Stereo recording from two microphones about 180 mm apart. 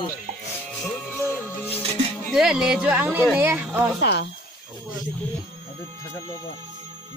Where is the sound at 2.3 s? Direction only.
5° right (ahead or behind).